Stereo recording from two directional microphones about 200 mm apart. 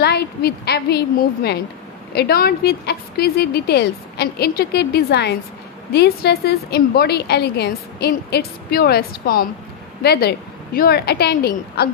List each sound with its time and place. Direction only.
0.0 s a woman's voice: 55° left (ahead or behind)